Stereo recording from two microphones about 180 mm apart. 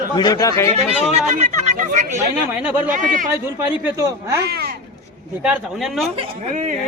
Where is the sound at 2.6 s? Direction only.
10° right (ahead or behind).